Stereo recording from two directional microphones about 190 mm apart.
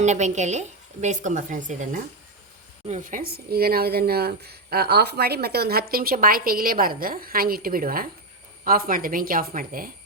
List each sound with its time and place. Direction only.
0.0 s a woman's voice: 35° right (ahead or behind)